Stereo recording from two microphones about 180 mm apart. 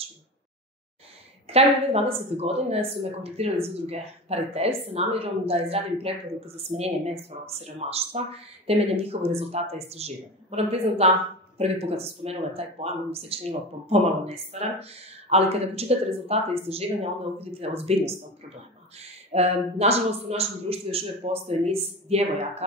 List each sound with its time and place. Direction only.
1.5 s speech: 35° right (ahead or behind)